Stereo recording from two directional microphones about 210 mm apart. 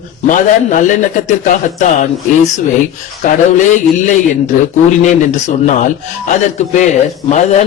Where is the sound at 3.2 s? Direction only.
35° left (ahead or behind).